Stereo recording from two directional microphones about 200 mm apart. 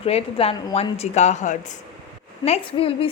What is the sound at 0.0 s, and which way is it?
A woman's voice, 30° left (ahead or behind).